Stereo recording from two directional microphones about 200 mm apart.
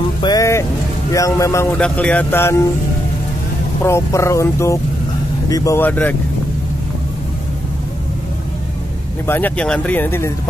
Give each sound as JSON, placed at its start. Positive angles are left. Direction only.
{"t": 0.2, "sound": "music", "side_deg": 20}
{"t": 1.1, "sound": "speech", "side_deg": 15}
{"t": 3.8, "sound": "speech", "side_deg": 15}
{"t": 9.2, "sound": "speech", "side_deg": 10}